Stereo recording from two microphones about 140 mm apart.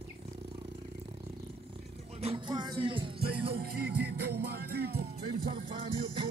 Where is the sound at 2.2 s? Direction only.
35° right (ahead or behind).